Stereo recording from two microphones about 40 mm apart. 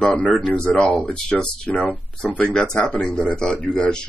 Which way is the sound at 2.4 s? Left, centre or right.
Left.